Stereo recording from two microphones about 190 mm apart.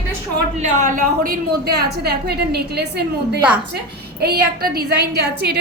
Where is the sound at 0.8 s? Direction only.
45° right (ahead or behind).